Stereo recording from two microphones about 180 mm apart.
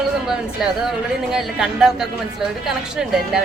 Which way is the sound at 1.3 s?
5° right (ahead or behind).